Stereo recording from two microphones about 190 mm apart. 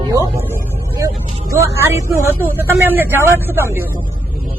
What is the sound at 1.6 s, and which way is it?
Speech, 15° right (ahead or behind).